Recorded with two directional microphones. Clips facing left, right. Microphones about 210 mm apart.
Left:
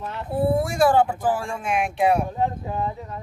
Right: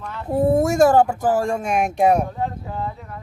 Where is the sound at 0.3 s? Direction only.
45° right (ahead or behind).